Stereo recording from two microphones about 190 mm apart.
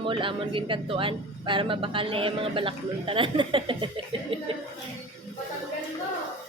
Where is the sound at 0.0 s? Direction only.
25° right (ahead or behind).